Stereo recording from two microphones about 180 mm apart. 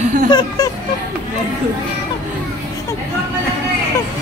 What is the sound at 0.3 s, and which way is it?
Speech, 25° left (ahead or behind).